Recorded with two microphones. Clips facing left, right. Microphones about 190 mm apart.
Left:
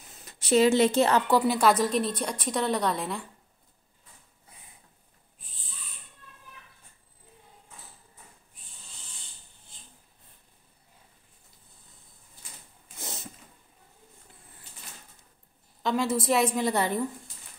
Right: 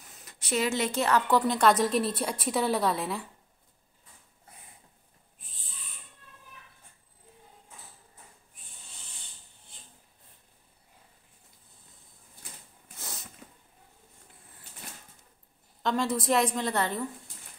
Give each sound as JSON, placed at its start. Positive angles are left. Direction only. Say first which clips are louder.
{"t": 0.2, "sound": "a woman's voice", "louder": "left 8 dB", "side_deg": 30}
{"t": 1.2, "sound": "a woman's voice", "louder": "left 1 dB", "side_deg": 10}
{"t": 13.0, "sound": "cat", "louder": "left 4 dB", "side_deg": 25}
{"t": 15.8, "sound": "a woman's voice", "louder": "left 2 dB", "side_deg": 5}